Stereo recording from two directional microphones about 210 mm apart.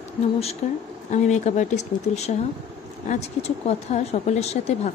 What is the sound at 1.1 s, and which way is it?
Speech, 35° left (ahead or behind).